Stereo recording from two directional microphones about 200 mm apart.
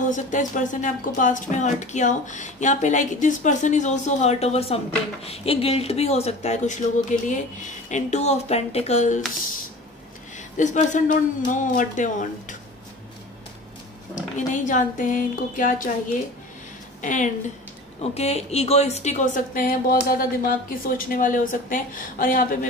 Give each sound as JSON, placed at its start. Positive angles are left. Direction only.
{"t": 0.1, "sound": "speech", "side_deg": 40}
{"t": 10.3, "sound": "speech", "side_deg": 35}
{"t": 14.5, "sound": "speech", "side_deg": 40}
{"t": 17.0, "sound": "speech", "side_deg": 40}